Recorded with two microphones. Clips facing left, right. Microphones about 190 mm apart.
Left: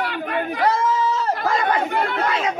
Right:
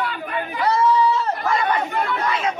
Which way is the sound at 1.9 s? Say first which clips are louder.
Left 1 dB; 65° left (ahead or behind).